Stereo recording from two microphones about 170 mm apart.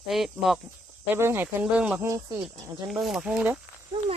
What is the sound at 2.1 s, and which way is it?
Speech, 20° right (ahead or behind).